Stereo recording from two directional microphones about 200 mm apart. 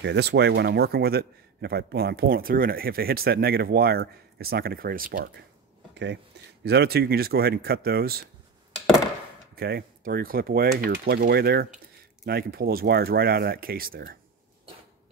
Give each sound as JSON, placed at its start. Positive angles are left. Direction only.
{"t": 0.0, "sound": "speech", "side_deg": -55}
{"t": 6.6, "sound": "speech", "side_deg": -55}
{"t": 9.6, "sound": "speech", "side_deg": -50}